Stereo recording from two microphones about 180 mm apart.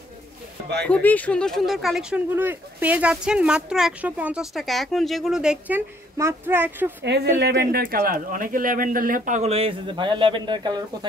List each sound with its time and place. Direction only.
0.8 s speech: 10° left (ahead or behind); by 7.1 s 10° right (ahead or behind)
7.1 s speech: 65° right (ahead or behind); by 11.1 s 25° right (ahead or behind)